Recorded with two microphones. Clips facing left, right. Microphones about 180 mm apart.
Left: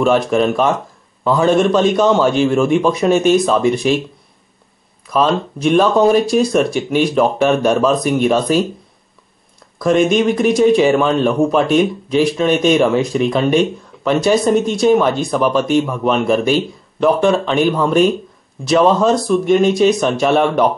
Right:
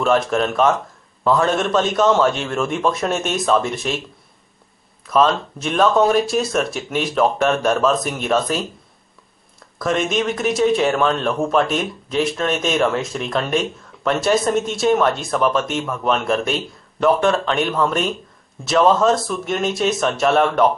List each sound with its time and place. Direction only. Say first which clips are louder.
0.0 s speech: left 4 dB; centre (ahead or behind)
5.0 s speech: left 1 dB; centre (ahead or behind)
9.8 s speech: left 7 dB; centre (ahead or behind)